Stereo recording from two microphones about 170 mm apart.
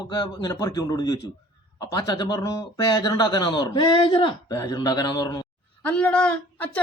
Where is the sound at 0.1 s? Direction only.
25° left (ahead or behind).